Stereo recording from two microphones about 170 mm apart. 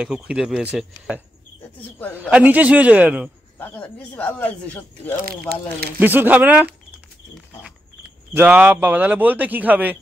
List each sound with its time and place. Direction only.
0.0 s speech: 5° right (ahead or behind)
1.8 s speech: 10° left (ahead or behind)
2.1 s a man's voice: 5° right (ahead or behind)
3.5 s speech: 10° left (ahead or behind)
5.5 s speech: 70° right (ahead or behind)
5.9 s a man's voice: 10° right (ahead or behind)
8.4 s a man's voice: 10° right (ahead or behind)